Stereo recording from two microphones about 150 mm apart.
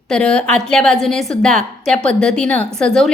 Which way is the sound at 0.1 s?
5° left (ahead or behind).